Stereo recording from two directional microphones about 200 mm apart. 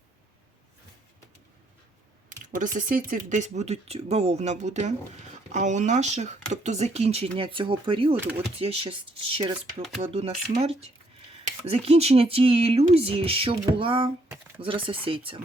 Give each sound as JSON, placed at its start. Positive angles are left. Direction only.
{"t": 2.6, "sound": "speech", "side_deg": -40}